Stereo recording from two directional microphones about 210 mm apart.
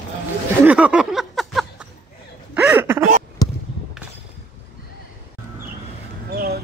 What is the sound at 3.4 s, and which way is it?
Basketball bounce, 20° left (ahead or behind).